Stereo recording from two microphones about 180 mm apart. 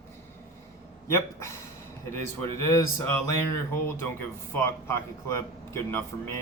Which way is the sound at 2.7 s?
15° left (ahead or behind).